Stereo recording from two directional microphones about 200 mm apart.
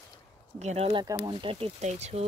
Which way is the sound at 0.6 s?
30° right (ahead or behind).